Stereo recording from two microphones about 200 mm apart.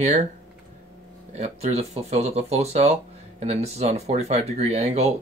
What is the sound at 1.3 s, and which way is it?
Speech, 35° right (ahead or behind).